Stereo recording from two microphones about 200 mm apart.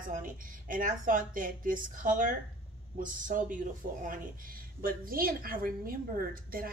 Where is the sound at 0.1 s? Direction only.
40° right (ahead or behind).